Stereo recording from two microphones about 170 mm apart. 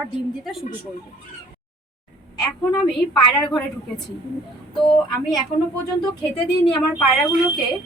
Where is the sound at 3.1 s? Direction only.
25° left (ahead or behind).